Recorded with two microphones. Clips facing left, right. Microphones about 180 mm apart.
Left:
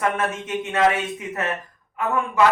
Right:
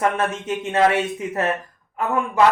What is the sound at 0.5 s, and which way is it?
Speech, 20° right (ahead or behind).